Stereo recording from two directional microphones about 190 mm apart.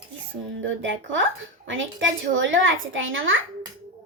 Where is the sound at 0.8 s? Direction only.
85° right.